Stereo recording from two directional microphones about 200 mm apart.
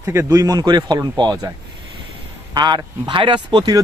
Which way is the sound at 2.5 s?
20° right (ahead or behind).